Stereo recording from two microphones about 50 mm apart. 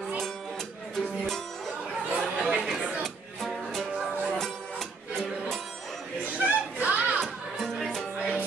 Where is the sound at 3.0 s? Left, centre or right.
Centre.